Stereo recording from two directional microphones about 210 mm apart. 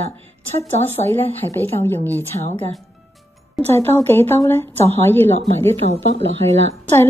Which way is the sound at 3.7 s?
10° left (ahead or behind).